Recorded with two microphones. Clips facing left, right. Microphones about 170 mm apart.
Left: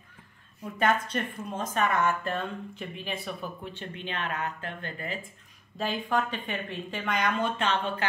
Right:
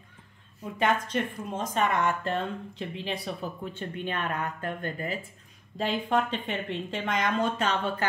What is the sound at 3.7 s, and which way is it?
Speech, 50° right (ahead or behind).